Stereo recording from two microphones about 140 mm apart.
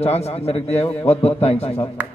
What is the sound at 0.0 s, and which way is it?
A man's voice, 50° left (ahead or behind).